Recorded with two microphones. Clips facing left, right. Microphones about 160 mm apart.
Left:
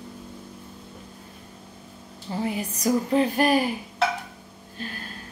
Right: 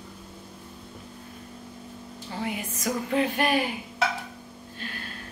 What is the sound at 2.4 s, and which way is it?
Speech, 35° left (ahead or behind).